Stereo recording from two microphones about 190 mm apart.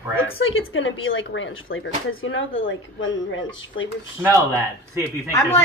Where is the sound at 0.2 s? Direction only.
90° left.